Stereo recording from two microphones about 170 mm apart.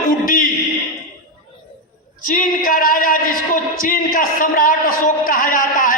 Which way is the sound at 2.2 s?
55° left (ahead or behind).